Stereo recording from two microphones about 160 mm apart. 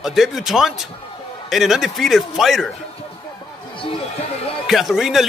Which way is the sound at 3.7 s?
35° left (ahead or behind).